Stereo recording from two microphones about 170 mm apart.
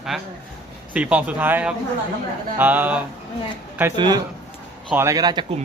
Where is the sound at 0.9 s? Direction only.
5° right (ahead or behind).